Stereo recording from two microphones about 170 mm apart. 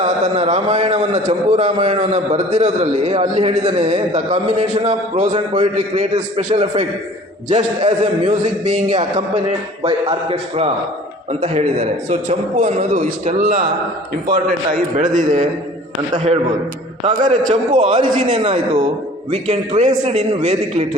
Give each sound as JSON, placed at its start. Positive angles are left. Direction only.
{"t": 0.0, "sound": "a man's voice", "side_deg": -40}
{"t": 14.9, "sound": "a man's voice", "side_deg": -50}
{"t": 17.7, "sound": "a man's voice", "side_deg": -30}